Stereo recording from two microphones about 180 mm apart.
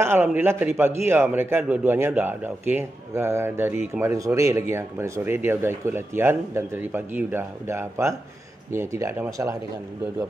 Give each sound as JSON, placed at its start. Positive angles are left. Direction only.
{"t": 0.0, "sound": "a man's voice", "side_deg": -10}